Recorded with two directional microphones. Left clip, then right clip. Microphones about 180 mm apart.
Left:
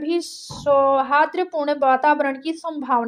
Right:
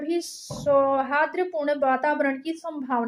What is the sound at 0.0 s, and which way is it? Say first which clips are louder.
Speech: left 4 dB; 20° left (ahead or behind).